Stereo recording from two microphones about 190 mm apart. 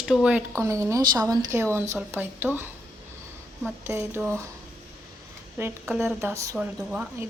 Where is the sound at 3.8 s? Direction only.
10° right (ahead or behind).